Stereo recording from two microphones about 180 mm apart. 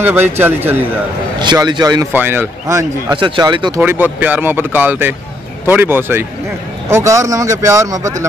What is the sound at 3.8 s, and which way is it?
Speech, 10° right (ahead or behind).